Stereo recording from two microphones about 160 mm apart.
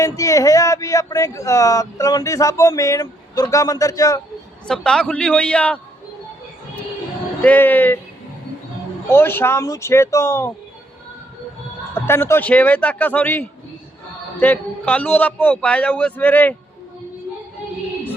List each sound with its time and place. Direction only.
0.0 s speech: 20° left (ahead or behind)
4.7 s a man's voice: 5° left (ahead or behind)
7.4 s a man's voice: 10° left (ahead or behind)
9.0 s a man's voice: 15° left (ahead or behind)
11.9 s a man's voice: 15° left (ahead or behind)